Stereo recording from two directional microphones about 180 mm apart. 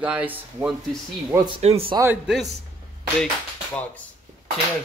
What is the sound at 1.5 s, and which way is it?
Speech, 35° right (ahead or behind).